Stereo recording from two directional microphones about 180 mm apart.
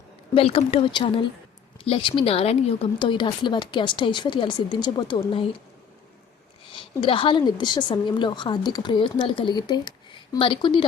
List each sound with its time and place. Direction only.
0.3 s a woman's voice: 30° left (ahead or behind)
6.7 s a woman's voice: 30° left (ahead or behind)